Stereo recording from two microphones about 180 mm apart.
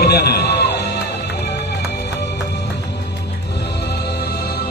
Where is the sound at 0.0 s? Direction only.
65° left (ahead or behind).